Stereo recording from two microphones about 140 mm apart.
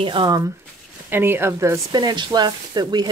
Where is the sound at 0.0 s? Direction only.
35° right (ahead or behind).